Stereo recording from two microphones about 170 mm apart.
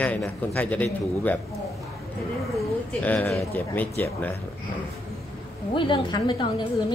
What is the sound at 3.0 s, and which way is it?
A man's voice, 10° left (ahead or behind).